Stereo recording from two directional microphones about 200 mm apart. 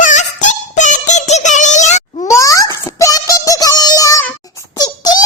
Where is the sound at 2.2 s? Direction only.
15° left (ahead or behind).